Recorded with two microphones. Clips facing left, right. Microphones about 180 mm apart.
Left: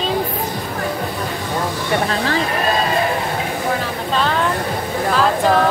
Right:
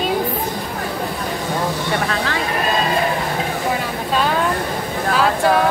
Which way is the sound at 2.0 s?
30° left (ahead or behind).